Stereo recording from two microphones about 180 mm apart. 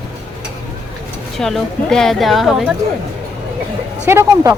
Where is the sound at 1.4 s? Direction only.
5° left (ahead or behind).